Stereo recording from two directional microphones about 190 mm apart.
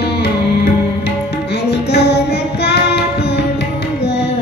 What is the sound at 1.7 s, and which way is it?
Music, 60° left (ahead or behind).